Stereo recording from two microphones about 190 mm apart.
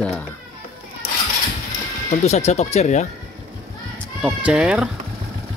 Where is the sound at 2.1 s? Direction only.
35° left (ahead or behind).